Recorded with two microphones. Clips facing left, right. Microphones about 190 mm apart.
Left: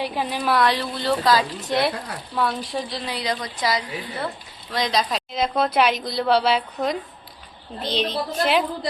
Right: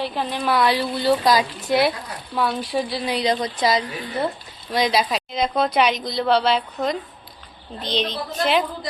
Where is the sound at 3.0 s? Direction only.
20° right (ahead or behind).